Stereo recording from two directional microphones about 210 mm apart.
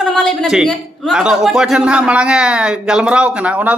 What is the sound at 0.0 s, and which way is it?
A man's voice, centre (ahead or behind).